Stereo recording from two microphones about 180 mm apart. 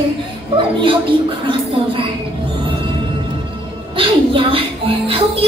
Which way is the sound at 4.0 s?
30° right (ahead or behind).